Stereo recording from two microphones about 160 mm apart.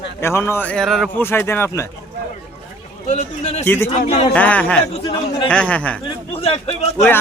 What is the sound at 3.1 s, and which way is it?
Speech, 45° left (ahead or behind).